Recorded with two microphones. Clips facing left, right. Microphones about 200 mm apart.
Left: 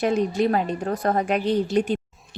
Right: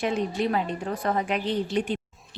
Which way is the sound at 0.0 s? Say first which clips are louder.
Left 5 dB; 40° left (ahead or behind).